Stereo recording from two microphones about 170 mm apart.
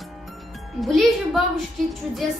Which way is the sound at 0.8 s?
Centre (ahead or behind).